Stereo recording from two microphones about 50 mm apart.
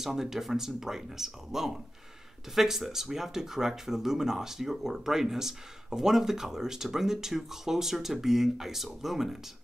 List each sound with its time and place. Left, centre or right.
0.0 s speech: centre